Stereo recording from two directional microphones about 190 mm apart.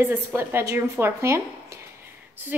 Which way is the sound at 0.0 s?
10° right (ahead or behind).